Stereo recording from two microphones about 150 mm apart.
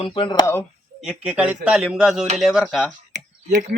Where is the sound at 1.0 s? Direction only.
5° right (ahead or behind).